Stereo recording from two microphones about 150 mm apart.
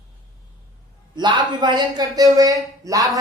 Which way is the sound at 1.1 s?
30° right (ahead or behind).